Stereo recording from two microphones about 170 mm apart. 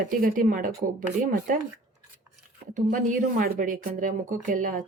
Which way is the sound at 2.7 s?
50° right (ahead or behind).